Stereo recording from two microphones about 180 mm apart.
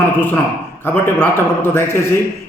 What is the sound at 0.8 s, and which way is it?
Speech, 10° left (ahead or behind).